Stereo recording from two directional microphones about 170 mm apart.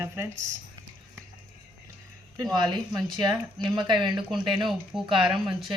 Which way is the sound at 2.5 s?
25° right (ahead or behind).